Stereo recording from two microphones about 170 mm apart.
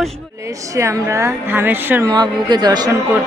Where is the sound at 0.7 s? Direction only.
20° right (ahead or behind).